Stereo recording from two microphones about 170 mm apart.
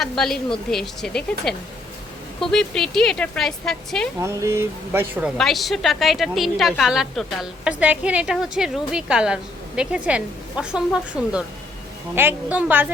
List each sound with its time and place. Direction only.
0.0 s a woman's voice: centre (ahead or behind)
4.2 s speech: 15° right (ahead or behind)
5.4 s a woman's voice: centre (ahead or behind)